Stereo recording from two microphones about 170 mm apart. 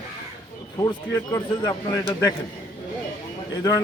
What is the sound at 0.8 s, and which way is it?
Speech, 20° left (ahead or behind).